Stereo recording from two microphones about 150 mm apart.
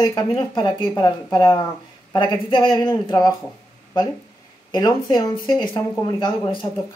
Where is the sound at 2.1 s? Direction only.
30° left (ahead or behind).